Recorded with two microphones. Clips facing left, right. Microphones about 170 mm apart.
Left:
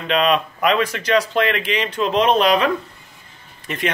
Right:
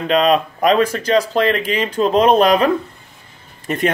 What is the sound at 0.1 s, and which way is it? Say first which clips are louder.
Speech: right 3 dB; 40° right (ahead or behind).